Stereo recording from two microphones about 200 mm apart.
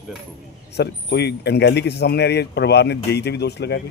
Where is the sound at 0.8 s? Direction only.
55° left (ahead or behind).